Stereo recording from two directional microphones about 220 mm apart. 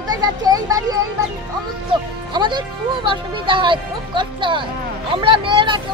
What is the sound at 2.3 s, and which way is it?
Speech, 20° right (ahead or behind).